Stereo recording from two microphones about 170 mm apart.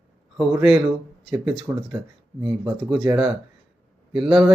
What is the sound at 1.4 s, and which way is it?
Speech, 5° right (ahead or behind).